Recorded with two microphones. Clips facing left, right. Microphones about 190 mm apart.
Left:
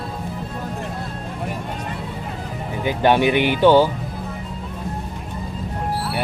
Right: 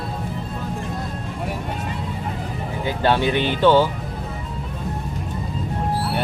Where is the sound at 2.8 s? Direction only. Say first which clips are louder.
Left 3 dB; 15° left (ahead or behind).